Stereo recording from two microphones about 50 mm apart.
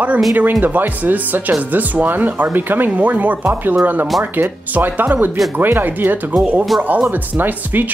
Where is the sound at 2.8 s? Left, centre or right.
Right.